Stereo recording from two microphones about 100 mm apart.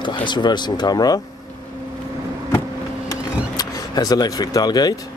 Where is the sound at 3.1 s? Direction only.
40° left (ahead or behind).